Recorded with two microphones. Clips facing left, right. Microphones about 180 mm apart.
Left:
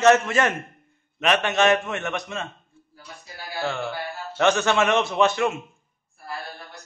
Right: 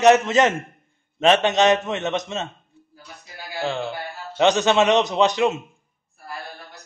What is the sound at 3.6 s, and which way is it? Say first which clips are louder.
A man's voice: right 2 dB; 20° right (ahead or behind).